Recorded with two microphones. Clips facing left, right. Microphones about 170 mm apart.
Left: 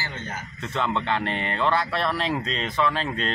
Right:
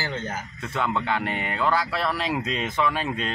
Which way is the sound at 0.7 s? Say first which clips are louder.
Even; 5° right (ahead or behind).